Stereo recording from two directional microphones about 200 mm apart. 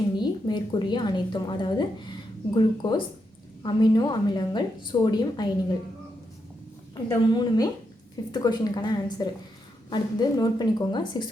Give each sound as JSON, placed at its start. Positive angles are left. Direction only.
{"t": 0.2, "sound": "a woman's voice", "side_deg": 20}
{"t": 6.9, "sound": "a woman's voice", "side_deg": 20}